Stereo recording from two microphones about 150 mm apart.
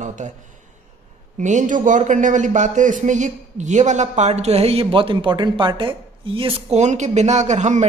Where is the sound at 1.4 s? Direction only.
55° right (ahead or behind).